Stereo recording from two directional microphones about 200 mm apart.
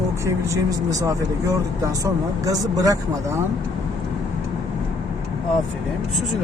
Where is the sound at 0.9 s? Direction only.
15° right (ahead or behind).